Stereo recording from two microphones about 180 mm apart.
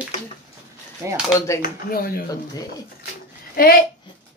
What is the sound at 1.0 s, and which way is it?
Speech, 15° right (ahead or behind).